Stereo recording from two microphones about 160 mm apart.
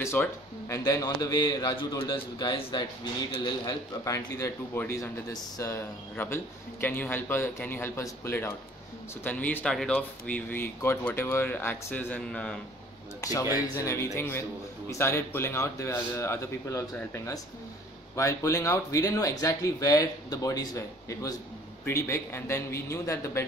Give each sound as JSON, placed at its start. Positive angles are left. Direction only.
{"t": 0.0, "sound": "a man's voice", "side_deg": 15}
{"t": 13.2, "sound": "a man's voice", "side_deg": 20}